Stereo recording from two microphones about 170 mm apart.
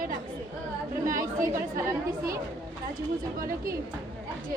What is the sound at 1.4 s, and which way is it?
Speech, 55° right (ahead or behind).